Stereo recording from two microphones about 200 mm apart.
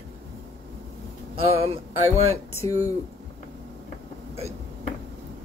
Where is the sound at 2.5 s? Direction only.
15° left (ahead or behind).